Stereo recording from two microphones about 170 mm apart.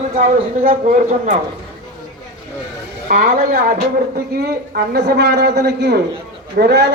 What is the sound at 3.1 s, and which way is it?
A man's voice, 55° right (ahead or behind).